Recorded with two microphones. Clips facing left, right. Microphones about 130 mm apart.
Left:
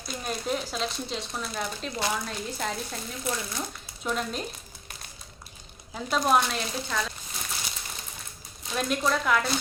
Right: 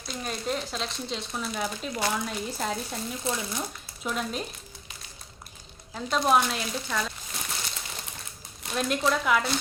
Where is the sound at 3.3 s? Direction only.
25° right (ahead or behind).